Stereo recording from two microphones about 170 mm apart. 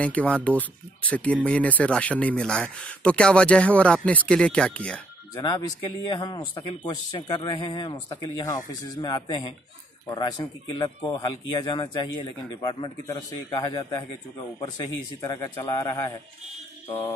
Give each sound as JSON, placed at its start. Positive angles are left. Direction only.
{"t": 0.0, "sound": "speech", "side_deg": 10}
{"t": 5.3, "sound": "speech", "side_deg": 25}
{"t": 15.2, "sound": "speech", "side_deg": 20}